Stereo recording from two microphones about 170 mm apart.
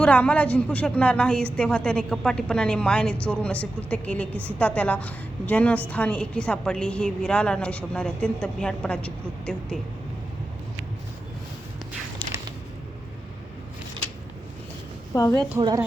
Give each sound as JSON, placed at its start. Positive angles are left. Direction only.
{"t": 0.0, "sound": "a woman's voice", "side_deg": 5}
{"t": 15.1, "sound": "a woman's voice", "side_deg": 20}